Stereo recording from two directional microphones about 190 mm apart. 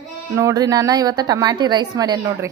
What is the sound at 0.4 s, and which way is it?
A woman's voice, 20° right (ahead or behind).